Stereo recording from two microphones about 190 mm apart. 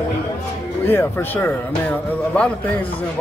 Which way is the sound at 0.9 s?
10° left (ahead or behind).